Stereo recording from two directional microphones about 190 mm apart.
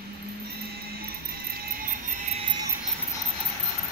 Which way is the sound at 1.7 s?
50° right (ahead or behind).